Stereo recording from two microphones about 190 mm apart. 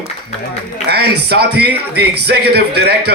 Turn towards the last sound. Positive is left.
turn(degrees=-55)  # may be behind; listen again after turning